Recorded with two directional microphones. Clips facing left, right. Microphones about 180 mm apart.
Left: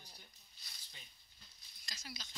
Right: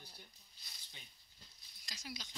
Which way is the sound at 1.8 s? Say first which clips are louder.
Right 3 dB; 15° right (ahead or behind).